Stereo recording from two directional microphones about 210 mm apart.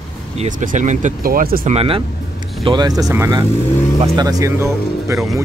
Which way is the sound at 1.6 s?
25° right (ahead or behind).